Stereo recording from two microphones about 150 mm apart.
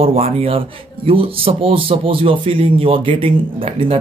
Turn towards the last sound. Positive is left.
turn(degrees=-35)  # may be behind; listen again after turning